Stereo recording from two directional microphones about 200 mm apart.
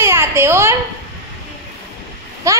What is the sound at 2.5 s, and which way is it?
Speech, 15° right (ahead or behind).